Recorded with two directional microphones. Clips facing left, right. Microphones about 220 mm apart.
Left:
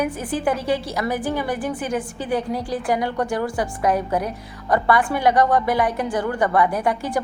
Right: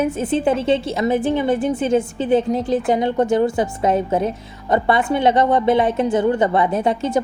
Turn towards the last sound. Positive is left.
turn(degrees=-25)  # may be behind; listen again after turning